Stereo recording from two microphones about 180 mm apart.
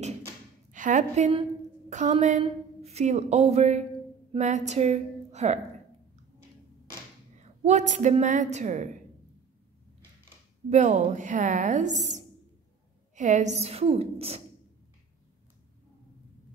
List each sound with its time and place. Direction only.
0.7 s a woman's voice: 45° right (ahead or behind)
7.3 s a woman's voice: 40° right (ahead or behind)
10.7 s a woman's voice: 40° right (ahead or behind)